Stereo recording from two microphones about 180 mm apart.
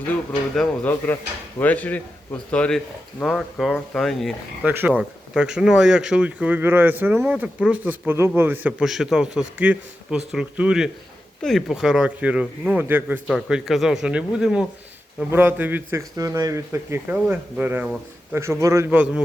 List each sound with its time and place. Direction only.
0.5 s speech: 5° left (ahead or behind)
4.6 s speech: 10° right (ahead or behind)